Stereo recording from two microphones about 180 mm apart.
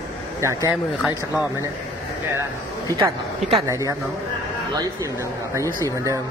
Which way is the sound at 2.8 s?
20° right (ahead or behind).